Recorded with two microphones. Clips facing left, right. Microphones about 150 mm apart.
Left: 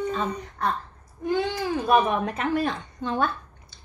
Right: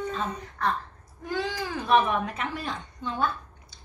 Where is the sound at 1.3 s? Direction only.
30° left (ahead or behind).